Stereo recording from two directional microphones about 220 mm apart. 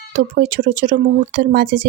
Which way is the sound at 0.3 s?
40° right (ahead or behind).